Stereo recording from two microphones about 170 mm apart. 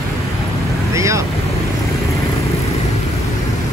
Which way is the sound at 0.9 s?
15° right (ahead or behind).